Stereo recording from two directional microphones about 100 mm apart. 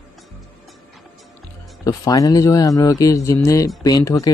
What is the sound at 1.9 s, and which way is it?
Speech, 40° left (ahead or behind).